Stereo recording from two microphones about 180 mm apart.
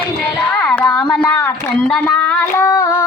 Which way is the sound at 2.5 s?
15° left (ahead or behind).